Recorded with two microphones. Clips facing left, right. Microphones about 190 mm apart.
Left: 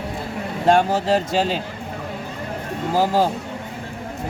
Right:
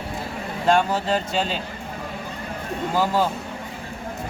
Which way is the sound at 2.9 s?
30° left (ahead or behind).